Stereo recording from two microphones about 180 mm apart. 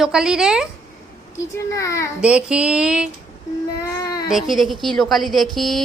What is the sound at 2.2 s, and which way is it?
Speech, 5° right (ahead or behind).